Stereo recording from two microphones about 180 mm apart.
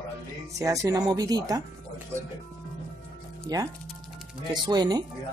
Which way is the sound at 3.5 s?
20° right (ahead or behind).